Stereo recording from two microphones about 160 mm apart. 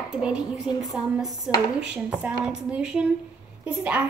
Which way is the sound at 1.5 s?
5° right (ahead or behind).